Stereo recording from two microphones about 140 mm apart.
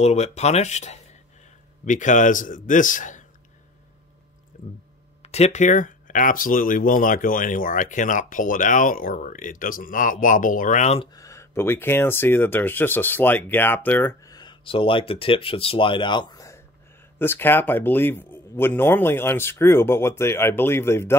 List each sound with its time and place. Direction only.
0.0 s speech: 55° left (ahead or behind)
5.2 s speech: 50° left (ahead or behind)
11.1 s speech: 20° left (ahead or behind)
14.2 s speech: 30° left (ahead or behind)